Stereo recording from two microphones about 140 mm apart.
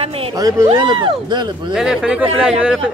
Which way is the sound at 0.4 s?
25° right (ahead or behind).